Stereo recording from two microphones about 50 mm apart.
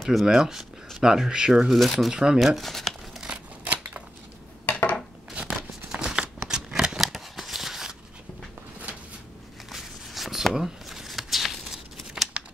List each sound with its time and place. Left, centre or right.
0.0 s speech: centre
1.7 s speech: centre
2.0 s speech: centre
2.3 s speech: centre
3.6 s scissors: right
4.6 s dishes: left
5.9 s a sound: centre
6.7 s shuffling cards: centre
7.1 s a sound: centre
8.9 s a sound: right
9.7 s shuffling cards: centre